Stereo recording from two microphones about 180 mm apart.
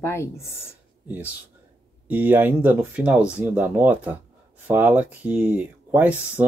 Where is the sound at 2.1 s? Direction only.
10° right (ahead or behind).